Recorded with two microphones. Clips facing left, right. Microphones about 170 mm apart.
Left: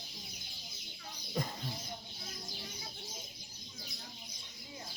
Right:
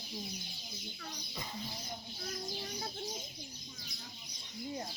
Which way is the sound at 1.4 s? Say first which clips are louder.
Left 9 dB; 50° left (ahead or behind).